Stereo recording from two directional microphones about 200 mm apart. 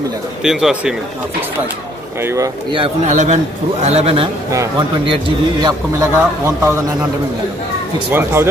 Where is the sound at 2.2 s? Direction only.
15° right (ahead or behind).